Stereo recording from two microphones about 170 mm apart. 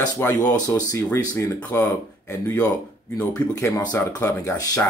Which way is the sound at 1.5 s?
10° left (ahead or behind).